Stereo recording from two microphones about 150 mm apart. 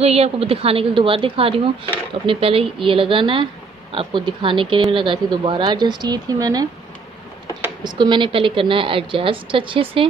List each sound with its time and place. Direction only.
0.0 s a woman's voice: 45° right (ahead or behind); by 6.7 s 25° right (ahead or behind)
7.8 s a woman's voice: 30° right (ahead or behind)